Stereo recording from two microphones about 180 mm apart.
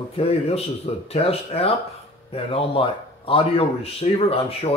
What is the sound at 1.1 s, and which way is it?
Speech, 35° left (ahead or behind).